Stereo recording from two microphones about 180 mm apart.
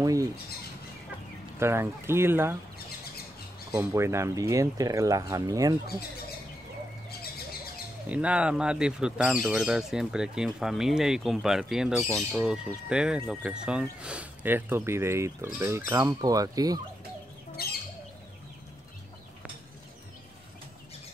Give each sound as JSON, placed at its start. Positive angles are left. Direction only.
{"t": 0.0, "sound": "speech", "side_deg": -20}
{"t": 1.6, "sound": "speech", "side_deg": -15}
{"t": 3.7, "sound": "speech", "side_deg": -15}
{"t": 8.1, "sound": "speech", "side_deg": -5}
{"t": 17.6, "sound": "bird", "side_deg": 60}